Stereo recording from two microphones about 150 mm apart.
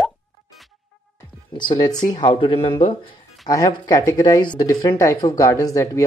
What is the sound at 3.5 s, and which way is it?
Speech, 25° left (ahead or behind).